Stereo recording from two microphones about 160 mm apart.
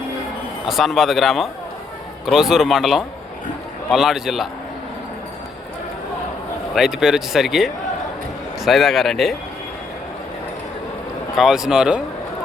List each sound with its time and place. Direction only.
0.7 s speech: centre (ahead or behind)
6.7 s speech: 5° right (ahead or behind)
11.3 s speech: 5° right (ahead or behind)